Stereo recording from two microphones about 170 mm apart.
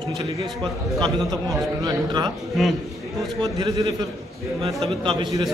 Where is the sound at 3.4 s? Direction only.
20° right (ahead or behind).